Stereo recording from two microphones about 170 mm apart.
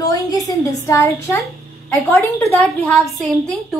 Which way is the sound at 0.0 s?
20° left (ahead or behind).